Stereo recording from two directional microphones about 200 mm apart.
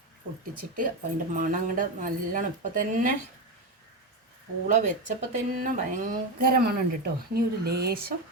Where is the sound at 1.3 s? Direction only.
40° right (ahead or behind).